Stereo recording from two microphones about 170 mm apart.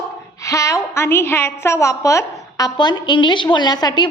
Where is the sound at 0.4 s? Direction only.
20° left (ahead or behind).